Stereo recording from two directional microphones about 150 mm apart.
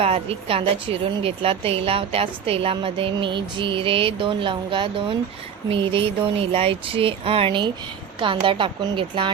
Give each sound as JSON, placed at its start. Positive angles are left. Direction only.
{"t": 0.0, "sound": "a woman's voice", "side_deg": -40}